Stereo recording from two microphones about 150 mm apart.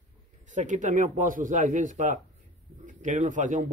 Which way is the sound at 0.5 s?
55° right (ahead or behind).